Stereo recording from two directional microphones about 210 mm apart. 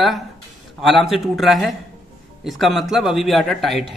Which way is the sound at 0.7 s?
Centre (ahead or behind).